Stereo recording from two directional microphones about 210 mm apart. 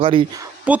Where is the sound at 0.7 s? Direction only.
5° right (ahead or behind).